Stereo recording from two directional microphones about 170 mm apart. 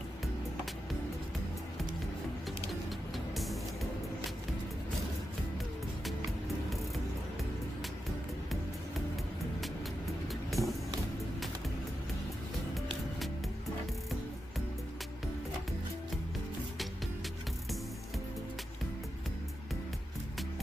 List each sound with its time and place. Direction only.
10.2 s vehicle: centre (ahead or behind)